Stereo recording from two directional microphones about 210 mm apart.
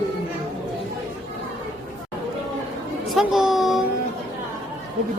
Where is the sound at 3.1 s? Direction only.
Centre (ahead or behind).